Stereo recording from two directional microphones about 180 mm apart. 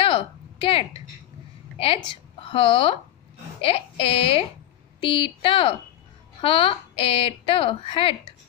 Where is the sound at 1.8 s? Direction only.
30° left (ahead or behind).